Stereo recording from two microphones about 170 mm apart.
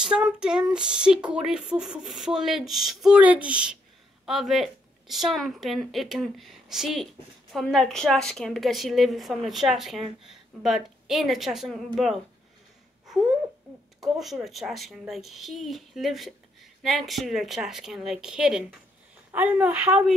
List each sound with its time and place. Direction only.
0.0 s a woman's voice: 5° right (ahead or behind)
14.0 s a woman's voice: centre (ahead or behind)